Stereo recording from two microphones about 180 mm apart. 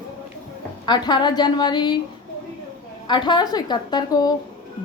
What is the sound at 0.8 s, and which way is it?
A woman's voice, 25° left (ahead or behind).